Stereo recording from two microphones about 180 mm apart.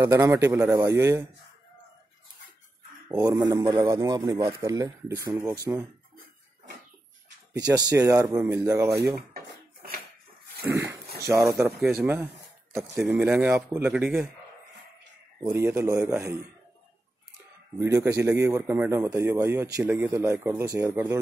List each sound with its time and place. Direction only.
0.0 s a man's voice: 15° right (ahead or behind)
3.2 s a man's voice: 15° right (ahead or behind)
7.5 s a man's voice: 20° right (ahead or behind)
10.6 s a man's voice: 15° right (ahead or behind)
15.4 s a man's voice: 15° right (ahead or behind)
17.7 s a man's voice: 15° right (ahead or behind)